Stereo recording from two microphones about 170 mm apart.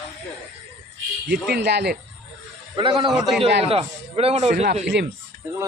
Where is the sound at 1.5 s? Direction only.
80° right.